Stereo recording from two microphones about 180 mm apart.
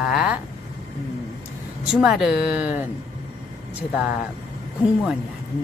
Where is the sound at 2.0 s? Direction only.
Centre (ahead or behind).